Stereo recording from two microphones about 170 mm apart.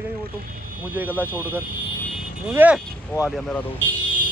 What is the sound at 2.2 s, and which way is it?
Vehicle, 10° right (ahead or behind).